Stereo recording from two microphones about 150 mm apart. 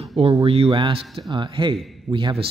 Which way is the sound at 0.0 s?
40° right (ahead or behind).